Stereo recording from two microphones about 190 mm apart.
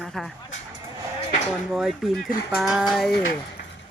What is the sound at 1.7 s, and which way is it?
Speech, centre (ahead or behind).